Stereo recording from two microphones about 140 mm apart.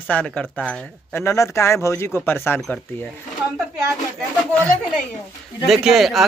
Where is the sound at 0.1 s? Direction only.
10° left (ahead or behind).